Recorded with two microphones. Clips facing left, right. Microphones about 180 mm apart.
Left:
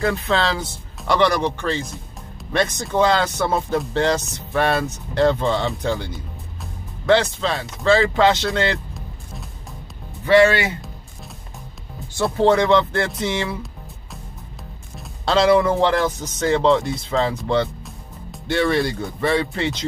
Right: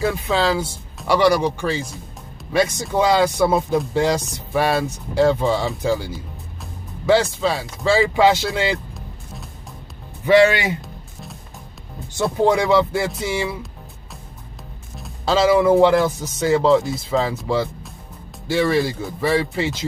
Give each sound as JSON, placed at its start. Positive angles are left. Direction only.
{"t": 0.0, "sound": "speech", "side_deg": -5}
{"t": 10.2, "sound": "speech", "side_deg": -15}
{"t": 12.4, "sound": "speech", "side_deg": -10}
{"t": 15.0, "sound": "speech", "side_deg": -5}